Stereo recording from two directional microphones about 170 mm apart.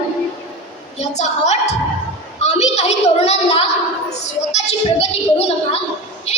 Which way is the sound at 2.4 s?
40° left (ahead or behind).